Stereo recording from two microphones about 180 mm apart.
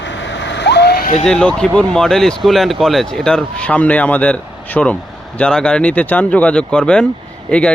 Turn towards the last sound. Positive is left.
turn(degrees=5)  # may be behind; listen again after turning